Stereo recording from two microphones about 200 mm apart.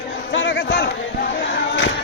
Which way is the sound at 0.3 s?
60° left (ahead or behind).